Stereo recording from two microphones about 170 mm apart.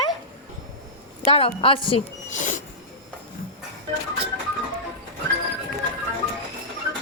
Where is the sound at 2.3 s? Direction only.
50° left (ahead or behind).